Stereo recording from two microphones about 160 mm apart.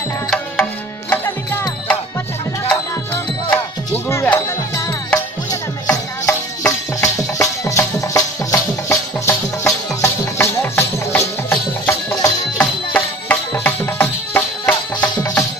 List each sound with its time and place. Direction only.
1.1 s music: 15° left (ahead or behind)